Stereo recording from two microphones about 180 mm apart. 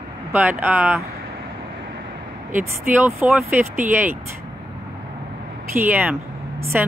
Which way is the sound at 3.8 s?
45° right (ahead or behind).